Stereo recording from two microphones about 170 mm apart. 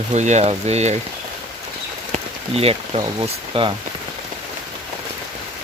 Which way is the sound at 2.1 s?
35° right (ahead or behind).